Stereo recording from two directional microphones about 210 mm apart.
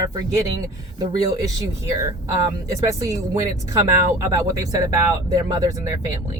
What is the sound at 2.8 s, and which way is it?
Speech, 15° right (ahead or behind).